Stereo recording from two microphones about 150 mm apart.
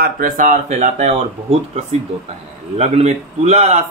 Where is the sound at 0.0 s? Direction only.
60° right (ahead or behind).